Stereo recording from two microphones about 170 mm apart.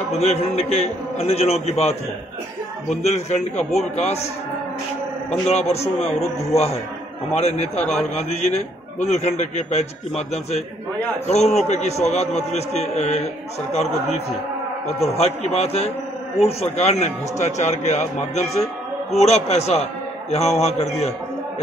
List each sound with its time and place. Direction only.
0.1 s a man's voice: 40° left (ahead or behind)
5.3 s a man's voice: 40° left (ahead or behind)
14.9 s a man's voice: 40° left (ahead or behind)